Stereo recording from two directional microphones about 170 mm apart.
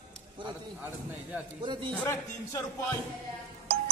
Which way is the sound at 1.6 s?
30° right (ahead or behind).